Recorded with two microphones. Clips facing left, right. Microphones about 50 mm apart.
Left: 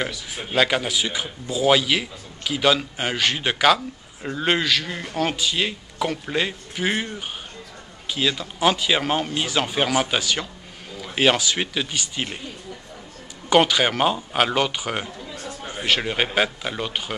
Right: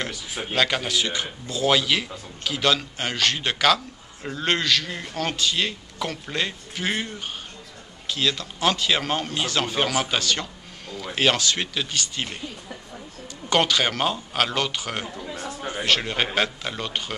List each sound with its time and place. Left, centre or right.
0.6 s a man's voice: centre
13.5 s a man's voice: centre
15.2 s a sound: right
15.8 s a man's voice: centre